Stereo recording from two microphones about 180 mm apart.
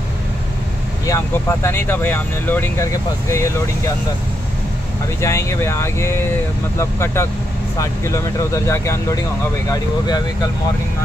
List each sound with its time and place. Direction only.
1.0 s speech: 15° left (ahead or behind)
5.2 s speech: 15° left (ahead or behind)